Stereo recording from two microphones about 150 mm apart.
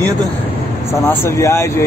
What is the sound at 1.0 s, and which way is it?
Speech, 20° left (ahead or behind).